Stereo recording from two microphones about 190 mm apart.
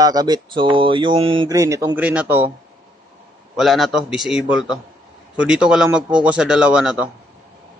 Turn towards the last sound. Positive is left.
turn(degrees=-5)  # may be behind; listen again after turning